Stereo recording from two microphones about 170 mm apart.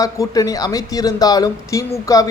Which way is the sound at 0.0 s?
20° left (ahead or behind).